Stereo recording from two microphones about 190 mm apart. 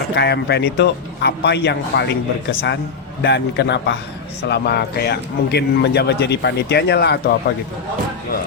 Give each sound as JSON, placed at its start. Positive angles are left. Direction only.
{"t": 0.1, "sound": "a man's voice", "side_deg": 60}